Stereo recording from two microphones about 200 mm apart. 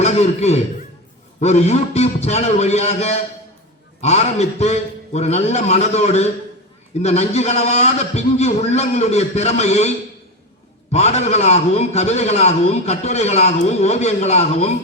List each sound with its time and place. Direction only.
0.0 s a man's voice: 35° left (ahead or behind)
10.9 s a man's voice: 35° left (ahead or behind)